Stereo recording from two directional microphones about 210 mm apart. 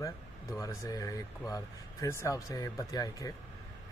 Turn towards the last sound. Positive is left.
turn(degrees=15)  # may be behind; listen again after turning